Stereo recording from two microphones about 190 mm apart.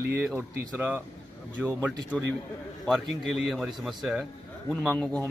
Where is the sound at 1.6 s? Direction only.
10° left (ahead or behind).